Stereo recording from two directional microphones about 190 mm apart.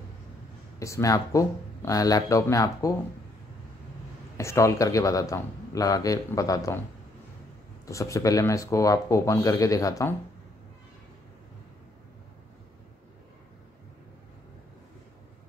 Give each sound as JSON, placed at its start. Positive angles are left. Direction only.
{"t": 0.7, "sound": "speech", "side_deg": 15}
{"t": 4.4, "sound": "speech", "side_deg": 15}
{"t": 7.8, "sound": "speech", "side_deg": 15}